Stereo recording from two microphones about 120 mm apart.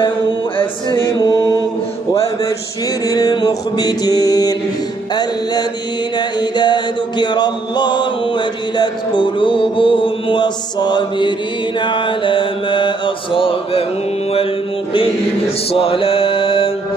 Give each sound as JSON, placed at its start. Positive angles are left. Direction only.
{"t": 0.6, "sound": "music", "side_deg": 45}
{"t": 1.1, "sound": "mantra", "side_deg": 35}
{"t": 3.1, "sound": "mantra", "side_deg": 30}
{"t": 6.1, "sound": "music", "side_deg": 40}
{"t": 11.8, "sound": "mantra", "side_deg": 45}